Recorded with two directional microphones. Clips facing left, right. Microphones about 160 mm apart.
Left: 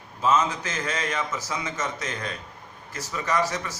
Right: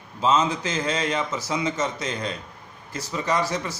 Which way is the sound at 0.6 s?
30° right (ahead or behind).